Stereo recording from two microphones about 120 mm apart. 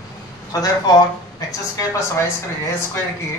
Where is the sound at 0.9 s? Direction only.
35° left (ahead or behind).